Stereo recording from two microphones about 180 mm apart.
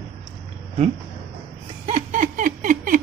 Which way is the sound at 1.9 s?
45° right (ahead or behind).